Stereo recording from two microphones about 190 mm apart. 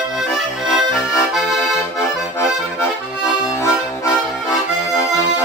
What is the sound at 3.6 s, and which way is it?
Music, 15° left (ahead or behind).